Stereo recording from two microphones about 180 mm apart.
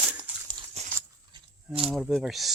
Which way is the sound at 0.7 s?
35° right (ahead or behind).